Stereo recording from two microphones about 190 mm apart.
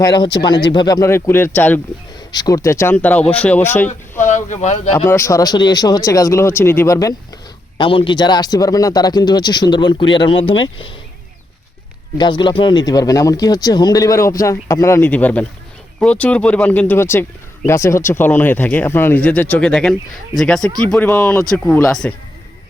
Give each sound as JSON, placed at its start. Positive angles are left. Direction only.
{"t": 0.0, "sound": "speech", "side_deg": 20}
{"t": 4.3, "sound": "speech", "side_deg": 40}
{"t": 4.9, "sound": "speech", "side_deg": 15}
{"t": 7.8, "sound": "speech", "side_deg": 25}
{"t": 12.1, "sound": "speech", "side_deg": 25}